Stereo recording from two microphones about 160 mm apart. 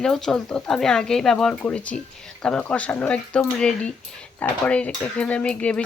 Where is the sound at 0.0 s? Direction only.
5° left (ahead or behind).